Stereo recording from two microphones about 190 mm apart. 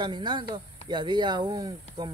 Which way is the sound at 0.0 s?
25° right (ahead or behind).